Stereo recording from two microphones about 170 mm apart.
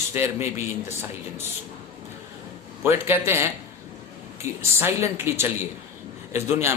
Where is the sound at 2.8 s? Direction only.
10° right (ahead or behind).